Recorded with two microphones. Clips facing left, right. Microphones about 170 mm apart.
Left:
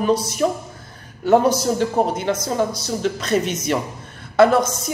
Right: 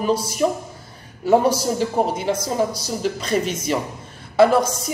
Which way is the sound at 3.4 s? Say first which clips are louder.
Even; 30° right (ahead or behind).